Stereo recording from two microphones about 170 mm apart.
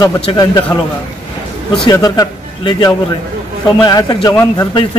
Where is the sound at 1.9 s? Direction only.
20° left (ahead or behind).